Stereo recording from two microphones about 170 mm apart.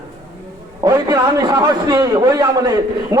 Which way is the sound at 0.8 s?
20° right (ahead or behind).